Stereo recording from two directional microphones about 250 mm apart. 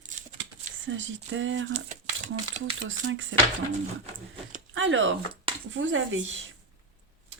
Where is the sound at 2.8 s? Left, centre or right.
Right.